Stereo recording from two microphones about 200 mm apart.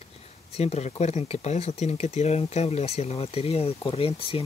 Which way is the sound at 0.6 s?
30° left (ahead or behind).